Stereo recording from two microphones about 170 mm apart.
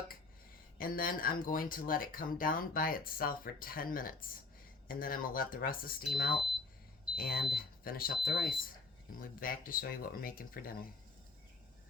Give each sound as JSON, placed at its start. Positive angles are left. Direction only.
{"t": 0.8, "sound": "speech", "side_deg": 60}